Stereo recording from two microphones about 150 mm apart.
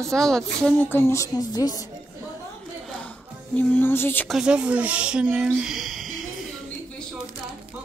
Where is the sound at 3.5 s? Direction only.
15° left (ahead or behind).